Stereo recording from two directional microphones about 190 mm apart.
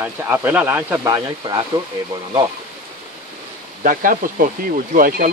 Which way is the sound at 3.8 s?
45° right (ahead or behind).